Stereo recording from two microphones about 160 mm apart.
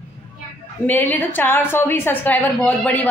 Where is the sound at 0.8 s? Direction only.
10° left (ahead or behind).